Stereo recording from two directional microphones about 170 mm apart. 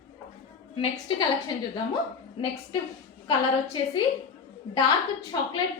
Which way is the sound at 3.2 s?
30° left (ahead or behind).